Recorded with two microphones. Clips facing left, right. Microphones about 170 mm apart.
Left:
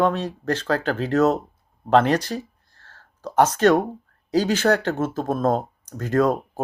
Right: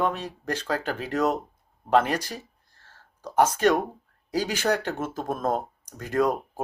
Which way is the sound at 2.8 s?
10° right (ahead or behind).